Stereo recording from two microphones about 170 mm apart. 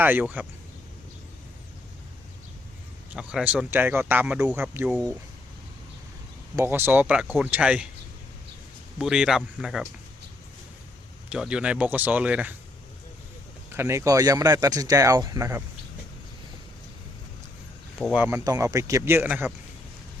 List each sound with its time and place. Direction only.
0.0 s speech: 10° right (ahead or behind)
3.2 s speech: 5° right (ahead or behind)
6.6 s speech: 15° right (ahead or behind)
9.0 s speech: centre (ahead or behind)
11.3 s speech: 5° right (ahead or behind)
13.7 s speech: 15° right (ahead or behind)
18.0 s speech: 10° right (ahead or behind)